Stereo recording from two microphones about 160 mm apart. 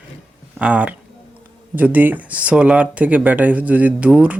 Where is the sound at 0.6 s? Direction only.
10° right (ahead or behind).